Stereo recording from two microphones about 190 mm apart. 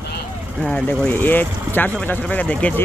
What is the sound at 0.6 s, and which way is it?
Speech, 5° left (ahead or behind).